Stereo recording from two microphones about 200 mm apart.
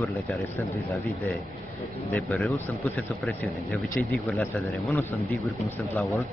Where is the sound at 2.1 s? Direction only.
Centre (ahead or behind).